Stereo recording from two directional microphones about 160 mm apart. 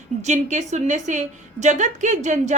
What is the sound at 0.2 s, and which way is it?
A woman's voice, 45° right (ahead or behind).